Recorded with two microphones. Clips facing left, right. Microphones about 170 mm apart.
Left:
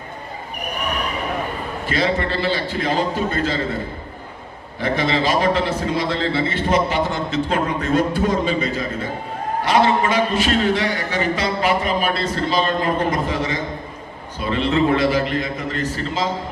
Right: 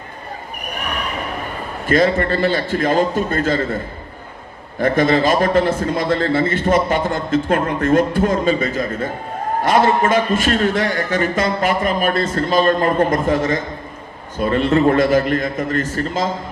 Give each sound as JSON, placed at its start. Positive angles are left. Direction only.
{"t": 1.9, "sound": "a man's voice", "side_deg": -50}
{"t": 4.8, "sound": "a man's voice", "side_deg": -50}